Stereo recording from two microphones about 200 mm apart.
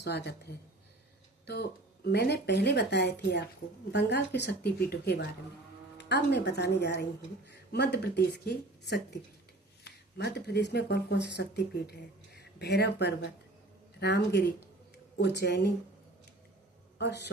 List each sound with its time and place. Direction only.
0.0 s speech: 55° left (ahead or behind)
2.0 s speech: 55° left (ahead or behind)
17.0 s speech: 60° left (ahead or behind)